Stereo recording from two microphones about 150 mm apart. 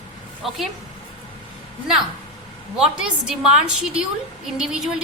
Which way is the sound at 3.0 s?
5° right (ahead or behind).